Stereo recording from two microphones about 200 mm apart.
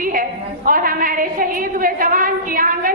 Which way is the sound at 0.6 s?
45° right (ahead or behind).